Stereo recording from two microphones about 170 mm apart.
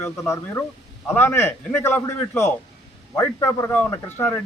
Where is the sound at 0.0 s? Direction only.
15° left (ahead or behind).